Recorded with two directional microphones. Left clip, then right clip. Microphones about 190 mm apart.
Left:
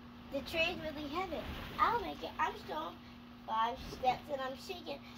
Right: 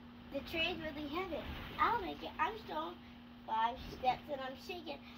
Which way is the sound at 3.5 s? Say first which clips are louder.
Left 1 dB; 20° left (ahead or behind).